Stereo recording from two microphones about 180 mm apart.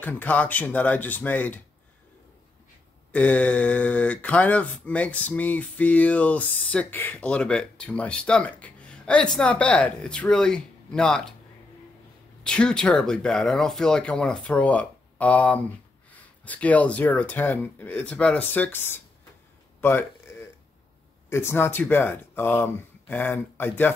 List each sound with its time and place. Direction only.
0.0 s speech: 10° left (ahead or behind)
3.1 s speech: 10° left (ahead or behind)
12.4 s speech: 5° left (ahead or behind)
21.3 s speech: 15° left (ahead or behind)